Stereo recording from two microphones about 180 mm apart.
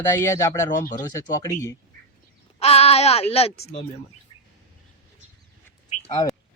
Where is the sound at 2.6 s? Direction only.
35° left (ahead or behind).